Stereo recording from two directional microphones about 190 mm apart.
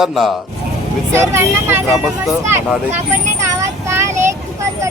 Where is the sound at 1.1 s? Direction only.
15° right (ahead or behind).